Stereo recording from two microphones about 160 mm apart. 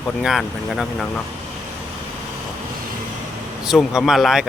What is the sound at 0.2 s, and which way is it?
Speech, centre (ahead or behind).